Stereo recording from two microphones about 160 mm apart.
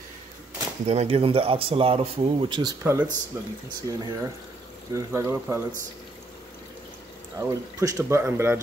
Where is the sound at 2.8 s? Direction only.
10° right (ahead or behind).